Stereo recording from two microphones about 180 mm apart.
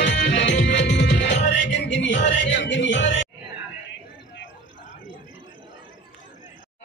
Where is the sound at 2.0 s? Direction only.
80° left.